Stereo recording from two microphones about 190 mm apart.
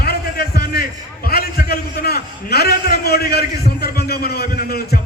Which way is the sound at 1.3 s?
55° left (ahead or behind).